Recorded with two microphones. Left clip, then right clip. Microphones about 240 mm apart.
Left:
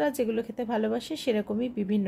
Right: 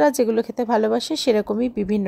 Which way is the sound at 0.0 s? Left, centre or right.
Right.